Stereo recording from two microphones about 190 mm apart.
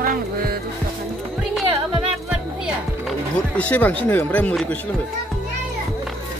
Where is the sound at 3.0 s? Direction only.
5° left (ahead or behind).